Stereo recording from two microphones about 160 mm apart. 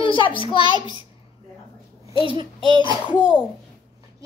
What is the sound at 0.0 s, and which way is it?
Speech, 30° left (ahead or behind).